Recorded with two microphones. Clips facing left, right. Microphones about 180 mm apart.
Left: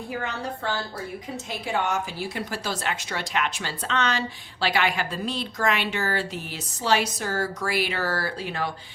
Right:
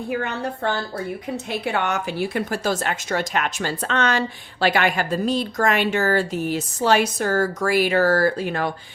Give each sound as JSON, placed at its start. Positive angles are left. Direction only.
{"t": 0.1, "sound": "a woman's voice", "side_deg": -60}